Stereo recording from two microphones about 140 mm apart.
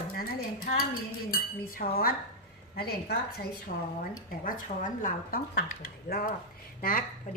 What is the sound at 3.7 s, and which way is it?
Speech, 85° left.